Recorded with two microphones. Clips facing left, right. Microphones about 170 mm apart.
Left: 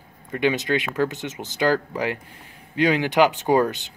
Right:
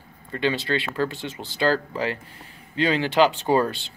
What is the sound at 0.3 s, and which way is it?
Speech, 15° left (ahead or behind).